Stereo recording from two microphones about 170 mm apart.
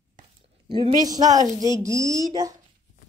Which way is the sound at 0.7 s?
25° right (ahead or behind).